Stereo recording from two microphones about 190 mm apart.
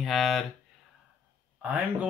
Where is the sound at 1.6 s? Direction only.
5° right (ahead or behind).